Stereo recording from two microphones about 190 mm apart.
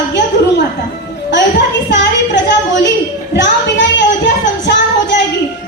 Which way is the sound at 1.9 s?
70° left (ahead or behind).